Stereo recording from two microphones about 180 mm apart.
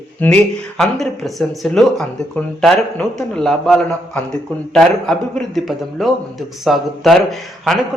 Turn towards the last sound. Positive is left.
turn(degrees=0)  # may be behind; listen again after turning